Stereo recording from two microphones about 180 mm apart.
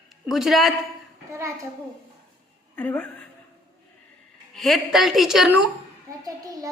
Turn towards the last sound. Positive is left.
turn(degrees=-5)  # may be behind; listen again after turning